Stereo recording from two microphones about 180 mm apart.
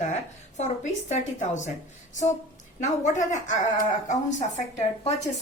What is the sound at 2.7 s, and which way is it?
Speech, 40° left (ahead or behind).